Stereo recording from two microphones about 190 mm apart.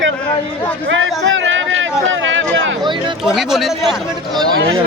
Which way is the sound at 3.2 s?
Centre (ahead or behind).